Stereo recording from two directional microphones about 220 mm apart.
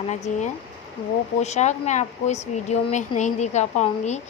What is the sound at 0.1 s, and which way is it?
Speech, 30° left (ahead or behind).